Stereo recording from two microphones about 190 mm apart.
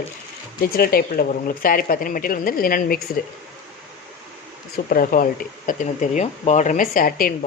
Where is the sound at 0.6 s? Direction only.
50° left (ahead or behind).